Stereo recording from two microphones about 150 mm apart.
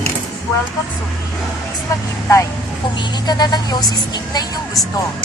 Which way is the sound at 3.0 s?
30° left (ahead or behind).